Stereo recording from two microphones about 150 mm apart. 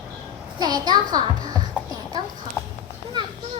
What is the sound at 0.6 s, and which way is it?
Speech, 25° right (ahead or behind).